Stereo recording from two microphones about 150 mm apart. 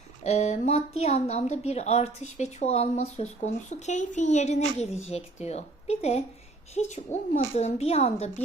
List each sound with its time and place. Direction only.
0.2 s a woman's voice: 50° left (ahead or behind)